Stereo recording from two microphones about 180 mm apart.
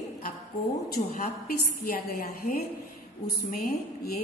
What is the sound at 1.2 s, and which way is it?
A woman's voice, 55° left (ahead or behind).